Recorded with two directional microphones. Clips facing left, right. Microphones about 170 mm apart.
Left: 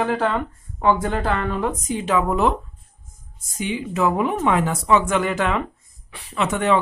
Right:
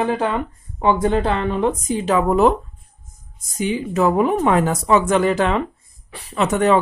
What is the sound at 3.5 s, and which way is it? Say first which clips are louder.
Speech: right 4 dB; 40° right (ahead or behind).